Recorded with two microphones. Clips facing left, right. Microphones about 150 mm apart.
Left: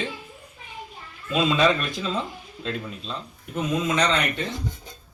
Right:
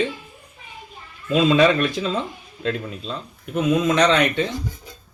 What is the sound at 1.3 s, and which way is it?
Speech, 60° right (ahead or behind).